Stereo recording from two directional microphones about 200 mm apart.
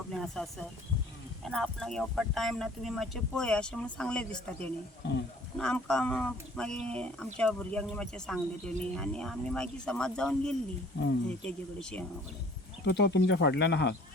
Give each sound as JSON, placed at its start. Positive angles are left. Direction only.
{"t": 0.1, "sound": "speech", "side_deg": 0}
{"t": 1.5, "sound": "speech", "side_deg": 0}
{"t": 11.8, "sound": "speech", "side_deg": 5}
{"t": 12.8, "sound": "speech", "side_deg": 60}